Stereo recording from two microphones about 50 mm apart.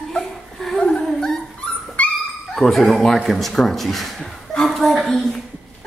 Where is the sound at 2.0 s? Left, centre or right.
Left.